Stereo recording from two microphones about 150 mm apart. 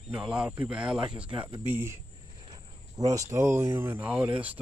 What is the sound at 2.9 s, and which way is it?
Speech, 25° right (ahead or behind).